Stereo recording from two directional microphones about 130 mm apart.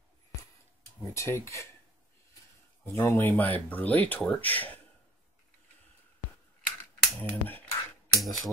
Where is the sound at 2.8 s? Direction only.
20° left (ahead or behind).